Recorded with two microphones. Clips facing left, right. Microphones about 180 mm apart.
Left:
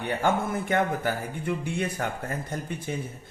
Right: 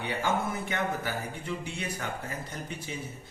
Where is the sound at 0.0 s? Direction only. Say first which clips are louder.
Left 4 dB; 55° left (ahead or behind).